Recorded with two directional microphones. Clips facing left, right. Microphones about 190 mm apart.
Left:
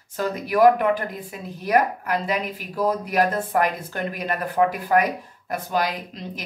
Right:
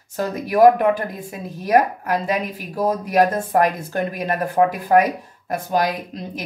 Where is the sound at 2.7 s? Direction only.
45° right (ahead or behind).